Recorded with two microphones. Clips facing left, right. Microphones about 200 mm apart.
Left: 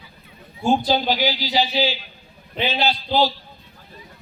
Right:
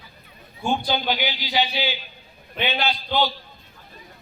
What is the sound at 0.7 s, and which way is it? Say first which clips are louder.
A man's voice: left 5 dB; 40° left (ahead or behind).